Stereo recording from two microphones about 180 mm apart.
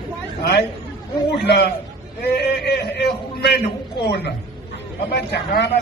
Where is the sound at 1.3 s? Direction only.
65° left (ahead or behind).